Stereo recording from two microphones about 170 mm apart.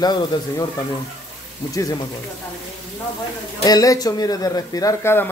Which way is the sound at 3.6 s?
20° left (ahead or behind).